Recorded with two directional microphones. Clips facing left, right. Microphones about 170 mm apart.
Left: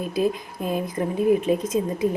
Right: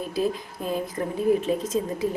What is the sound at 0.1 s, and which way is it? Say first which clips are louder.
A woman's voice: left 3 dB; 15° left (ahead or behind).